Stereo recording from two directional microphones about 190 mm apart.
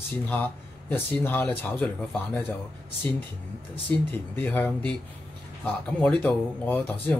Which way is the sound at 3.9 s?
10° left (ahead or behind).